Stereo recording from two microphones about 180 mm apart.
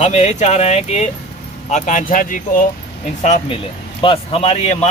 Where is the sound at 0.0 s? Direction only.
40° left (ahead or behind).